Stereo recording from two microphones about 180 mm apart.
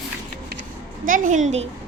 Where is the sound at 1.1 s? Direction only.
45° right (ahead or behind).